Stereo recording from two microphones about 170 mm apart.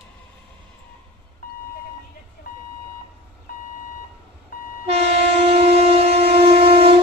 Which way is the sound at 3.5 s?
60° left (ahead or behind).